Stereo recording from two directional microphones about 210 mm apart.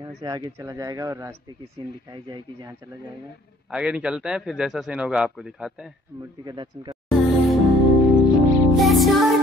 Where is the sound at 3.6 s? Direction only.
5° right (ahead or behind).